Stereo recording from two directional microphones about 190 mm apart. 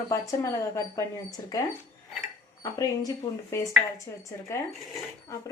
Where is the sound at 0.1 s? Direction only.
15° left (ahead or behind).